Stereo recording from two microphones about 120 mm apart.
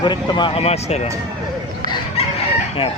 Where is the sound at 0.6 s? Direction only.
60° left (ahead or behind).